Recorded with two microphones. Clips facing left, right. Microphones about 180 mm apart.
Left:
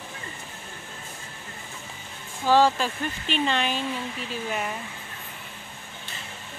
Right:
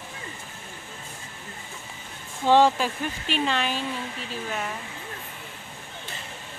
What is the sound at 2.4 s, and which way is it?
Speech, 20° right (ahead or behind).